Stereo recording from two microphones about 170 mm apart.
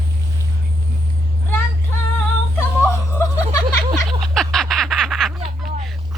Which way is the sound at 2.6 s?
15° left (ahead or behind).